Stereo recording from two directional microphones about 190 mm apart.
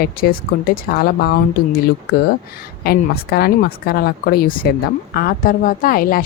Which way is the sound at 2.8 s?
55° left (ahead or behind).